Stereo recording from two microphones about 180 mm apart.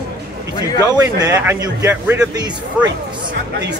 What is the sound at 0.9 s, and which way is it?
A man's voice, 20° right (ahead or behind).